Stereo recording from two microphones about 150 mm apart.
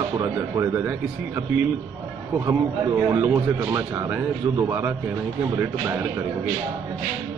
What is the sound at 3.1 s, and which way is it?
A man's voice, 20° right (ahead or behind).